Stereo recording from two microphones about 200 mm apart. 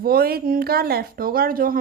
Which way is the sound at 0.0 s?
50° right (ahead or behind).